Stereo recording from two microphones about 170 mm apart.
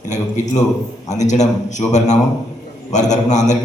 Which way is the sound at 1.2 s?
45° left (ahead or behind).